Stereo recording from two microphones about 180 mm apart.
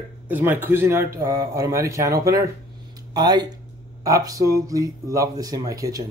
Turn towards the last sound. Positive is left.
turn(degrees=-20)  # may be behind; listen again after turning